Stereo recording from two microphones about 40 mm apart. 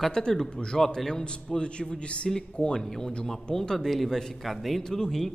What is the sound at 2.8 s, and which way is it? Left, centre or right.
A man's voice, centre.